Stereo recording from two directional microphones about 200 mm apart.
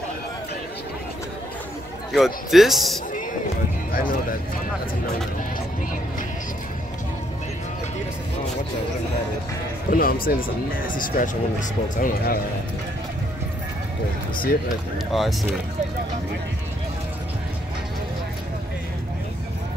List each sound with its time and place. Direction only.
2.1 s a man's voice: centre (ahead or behind)
3.9 s speech: 45° left (ahead or behind)
9.8 s speech: 45° left (ahead or behind)
15.1 s a man's voice: centre (ahead or behind)